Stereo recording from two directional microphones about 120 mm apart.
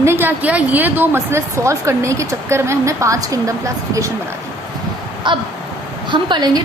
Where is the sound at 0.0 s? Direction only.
20° right (ahead or behind).